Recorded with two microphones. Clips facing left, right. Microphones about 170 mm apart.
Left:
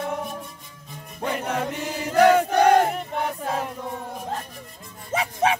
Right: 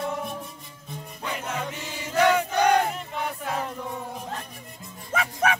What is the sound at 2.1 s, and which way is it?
Battle cry, 50° left (ahead or behind).